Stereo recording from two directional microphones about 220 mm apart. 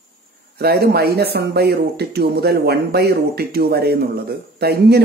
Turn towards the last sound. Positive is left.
turn(degrees=-45)  # may be behind; listen again after turning